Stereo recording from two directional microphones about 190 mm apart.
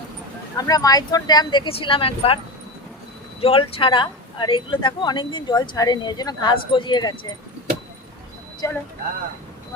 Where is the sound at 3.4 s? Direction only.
30° left (ahead or behind).